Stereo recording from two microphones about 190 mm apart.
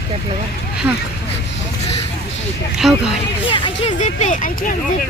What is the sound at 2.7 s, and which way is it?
Speech, 5° right (ahead or behind).